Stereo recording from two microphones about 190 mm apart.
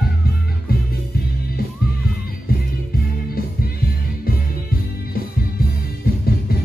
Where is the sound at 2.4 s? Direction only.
50° left (ahead or behind).